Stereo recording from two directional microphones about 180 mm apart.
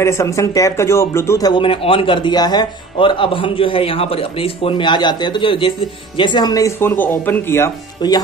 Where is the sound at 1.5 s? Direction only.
30° left (ahead or behind).